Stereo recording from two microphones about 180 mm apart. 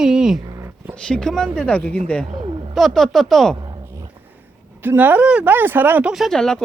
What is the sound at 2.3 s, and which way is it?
Speech, 30° right (ahead or behind).